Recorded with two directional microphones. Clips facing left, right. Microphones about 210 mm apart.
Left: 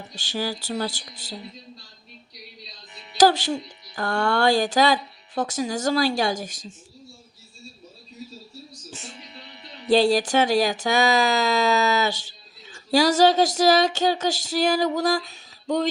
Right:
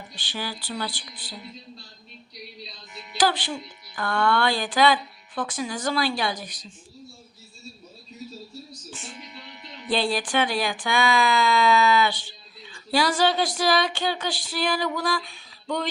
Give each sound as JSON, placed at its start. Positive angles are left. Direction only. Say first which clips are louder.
{"t": 0.1, "sound": "speech", "louder": "left 6 dB", "side_deg": 45}
{"t": 2.9, "sound": "speech", "louder": "left 6 dB", "side_deg": 35}
{"t": 8.9, "sound": "music", "louder": "left 2 dB", "side_deg": 40}
{"t": 9.1, "sound": "speech", "louder": "right 1 dB", "side_deg": 35}
{"t": 12.7, "sound": "a sound", "louder": "left 5 dB", "side_deg": 40}